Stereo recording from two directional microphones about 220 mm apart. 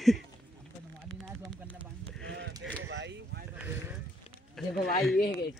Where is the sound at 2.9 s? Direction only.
55° right (ahead or behind).